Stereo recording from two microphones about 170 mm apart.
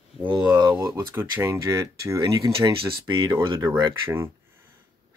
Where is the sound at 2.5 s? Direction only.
30° right (ahead or behind); by 4.3 s 15° right (ahead or behind).